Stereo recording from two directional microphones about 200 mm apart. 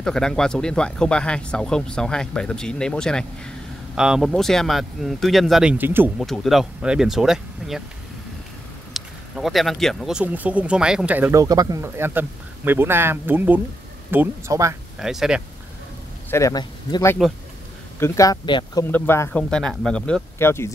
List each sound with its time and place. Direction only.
0.0 s speech: 5° left (ahead or behind)
6.1 s speech: centre (ahead or behind)
8.9 s speech: centre (ahead or behind)
15.0 s speech: centre (ahead or behind)
16.3 s speech: 15° left (ahead or behind)
18.9 s speech: 10° left (ahead or behind)